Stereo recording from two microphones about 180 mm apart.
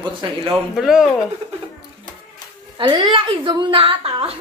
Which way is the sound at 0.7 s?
Centre (ahead or behind).